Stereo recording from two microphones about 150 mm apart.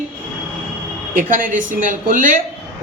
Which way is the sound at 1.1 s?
65° right (ahead or behind).